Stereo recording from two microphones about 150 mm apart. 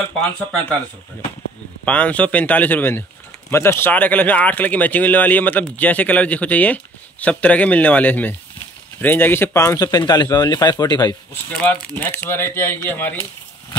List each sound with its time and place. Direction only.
1.9 s speech: 10° left (ahead or behind); by 11.1 s 25° left (ahead or behind)
11.5 s speech: 10° left (ahead or behind)